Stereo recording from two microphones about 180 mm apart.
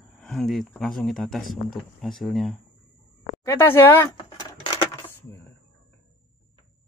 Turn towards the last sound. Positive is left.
turn(degrees=10)  # may be behind; listen again after turning